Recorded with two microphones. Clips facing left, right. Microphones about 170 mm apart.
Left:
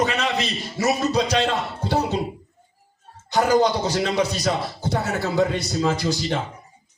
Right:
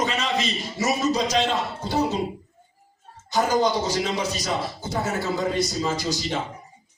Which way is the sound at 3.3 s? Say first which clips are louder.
Left 3 dB; 65° left (ahead or behind).